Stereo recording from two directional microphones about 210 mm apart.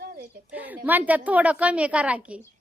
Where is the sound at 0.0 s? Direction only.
45° right (ahead or behind).